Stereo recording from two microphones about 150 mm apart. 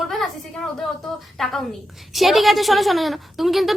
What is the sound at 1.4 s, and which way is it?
A woman's voice, centre (ahead or behind).